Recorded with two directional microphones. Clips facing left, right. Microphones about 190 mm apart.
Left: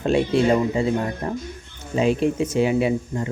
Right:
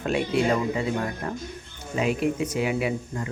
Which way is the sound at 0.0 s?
25° left (ahead or behind).